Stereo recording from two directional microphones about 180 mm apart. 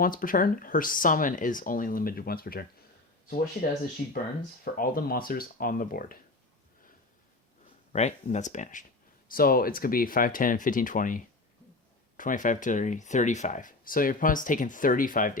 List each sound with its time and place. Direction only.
0.0 s speech: 50° left (ahead or behind)
7.9 s speech: 40° left (ahead or behind)
9.3 s speech: 55° left (ahead or behind)